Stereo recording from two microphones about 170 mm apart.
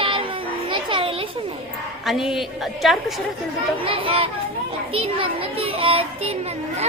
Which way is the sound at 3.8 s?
30° right (ahead or behind).